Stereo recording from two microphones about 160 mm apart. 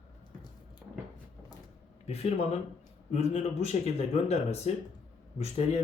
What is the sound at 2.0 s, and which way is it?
Speech, 40° left (ahead or behind).